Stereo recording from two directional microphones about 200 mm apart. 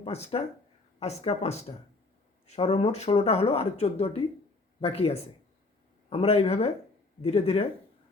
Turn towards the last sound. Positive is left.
turn(degrees=30)  # may be behind; listen again after turning